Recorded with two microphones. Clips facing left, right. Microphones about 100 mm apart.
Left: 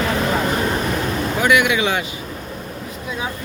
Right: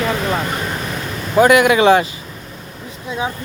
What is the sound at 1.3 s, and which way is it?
Speech, 35° right (ahead or behind).